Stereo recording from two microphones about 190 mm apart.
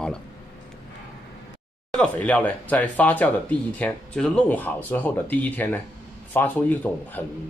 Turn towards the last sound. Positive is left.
turn(degrees=10)  # may be behind; listen again after turning